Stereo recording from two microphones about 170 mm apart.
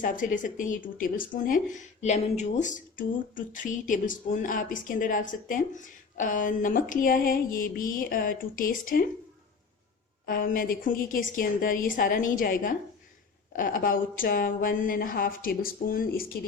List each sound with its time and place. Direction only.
0.0 s speech: 50° left (ahead or behind)
10.2 s speech: 55° left (ahead or behind)